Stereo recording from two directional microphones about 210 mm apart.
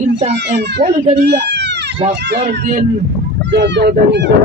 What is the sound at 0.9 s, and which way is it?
Speech, 30° right (ahead or behind).